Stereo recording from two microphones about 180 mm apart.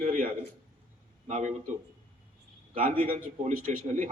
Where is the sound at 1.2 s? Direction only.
40° right (ahead or behind).